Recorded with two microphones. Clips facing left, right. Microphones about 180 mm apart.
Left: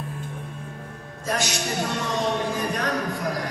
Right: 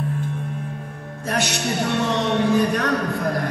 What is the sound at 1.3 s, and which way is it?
Music, 65° right (ahead or behind).